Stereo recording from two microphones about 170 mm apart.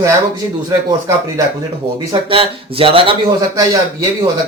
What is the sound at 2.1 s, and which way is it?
Speech, 30° right (ahead or behind).